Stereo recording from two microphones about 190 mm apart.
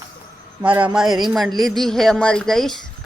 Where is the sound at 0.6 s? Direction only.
5° right (ahead or behind).